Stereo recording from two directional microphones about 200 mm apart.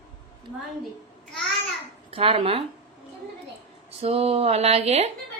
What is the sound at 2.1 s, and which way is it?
Speech, 30° right (ahead or behind).